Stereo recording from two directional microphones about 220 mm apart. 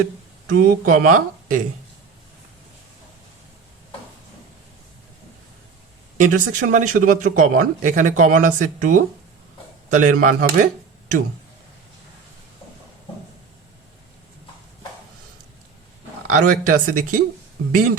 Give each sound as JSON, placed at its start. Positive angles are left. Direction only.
{"t": 0.6, "sound": "speech", "side_deg": -40}
{"t": 6.1, "sound": "speech", "side_deg": -35}
{"t": 16.3, "sound": "speech", "side_deg": -35}